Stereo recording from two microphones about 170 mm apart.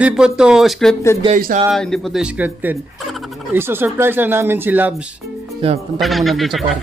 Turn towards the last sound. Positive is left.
turn(degrees=0)  # may be behind; listen again after turning